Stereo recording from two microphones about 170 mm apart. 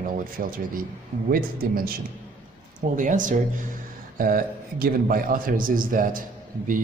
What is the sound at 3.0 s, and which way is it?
A man's voice, 50° right (ahead or behind).